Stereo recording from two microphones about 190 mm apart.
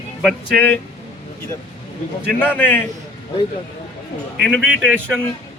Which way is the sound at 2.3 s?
10° left (ahead or behind).